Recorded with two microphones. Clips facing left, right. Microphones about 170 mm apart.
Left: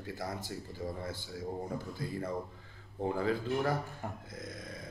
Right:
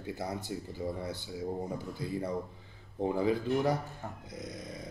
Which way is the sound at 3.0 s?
15° right (ahead or behind).